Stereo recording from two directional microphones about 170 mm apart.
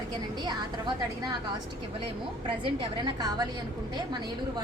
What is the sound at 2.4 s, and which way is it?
A woman's voice, 30° right (ahead or behind).